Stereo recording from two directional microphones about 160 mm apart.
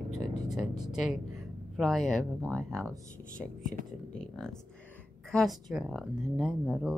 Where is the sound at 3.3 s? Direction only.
55° left (ahead or behind).